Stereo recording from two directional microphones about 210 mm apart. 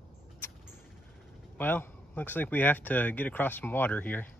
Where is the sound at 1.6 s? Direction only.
10° left (ahead or behind).